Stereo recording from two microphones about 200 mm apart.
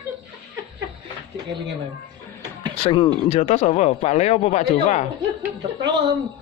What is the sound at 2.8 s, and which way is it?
Speech, 25° left (ahead or behind).